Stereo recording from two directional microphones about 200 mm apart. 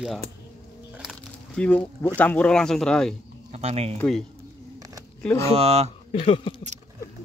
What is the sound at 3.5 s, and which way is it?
Speech, 30° right (ahead or behind).